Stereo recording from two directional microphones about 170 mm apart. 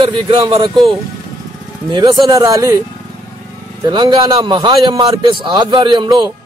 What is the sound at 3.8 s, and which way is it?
A man's voice, 25° right (ahead or behind).